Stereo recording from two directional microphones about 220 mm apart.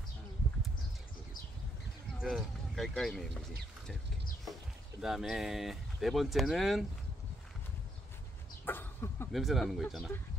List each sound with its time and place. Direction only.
2.1 s speech: centre (ahead or behind)
5.0 s speech: centre (ahead or behind)
8.6 s a sound: 10° left (ahead or behind)
9.3 s speech: centre (ahead or behind)